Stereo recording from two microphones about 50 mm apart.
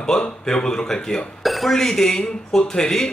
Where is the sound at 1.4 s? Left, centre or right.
Centre.